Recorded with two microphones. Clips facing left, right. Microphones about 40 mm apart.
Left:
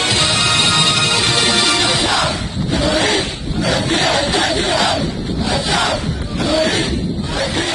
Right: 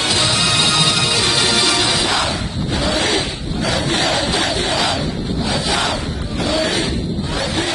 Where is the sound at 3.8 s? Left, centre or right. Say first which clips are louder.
Left 1 dB; left.